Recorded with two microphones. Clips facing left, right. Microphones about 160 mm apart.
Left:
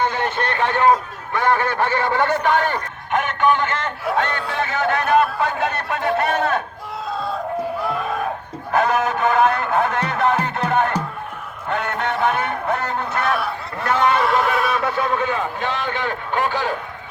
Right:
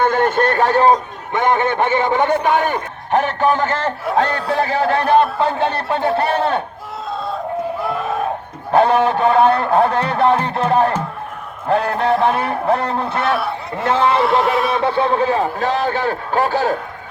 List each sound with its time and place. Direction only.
0.0 s a sound: 50° right (ahead or behind)
1.3 s a man's voice: 20° right (ahead or behind)
3.1 s speech: 35° right (ahead or behind)
8.7 s a man's voice: 30° right (ahead or behind)